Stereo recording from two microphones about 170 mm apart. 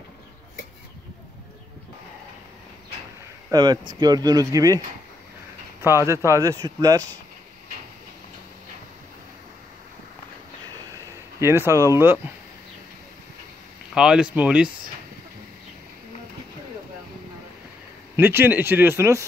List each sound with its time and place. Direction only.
3.5 s speech: 25° right (ahead or behind)
6.0 s speech: 15° right (ahead or behind)
11.4 s speech: 15° right (ahead or behind)
13.9 s speech: 5° right (ahead or behind)
18.1 s speech: 15° right (ahead or behind)